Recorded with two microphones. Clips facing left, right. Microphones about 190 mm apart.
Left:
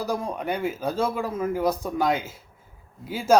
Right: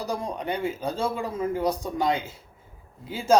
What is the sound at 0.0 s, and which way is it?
Speech, 10° left (ahead or behind).